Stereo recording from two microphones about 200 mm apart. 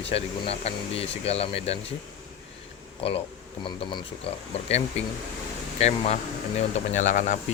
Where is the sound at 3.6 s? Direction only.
25° left (ahead or behind); by 7.4 s 40° left (ahead or behind).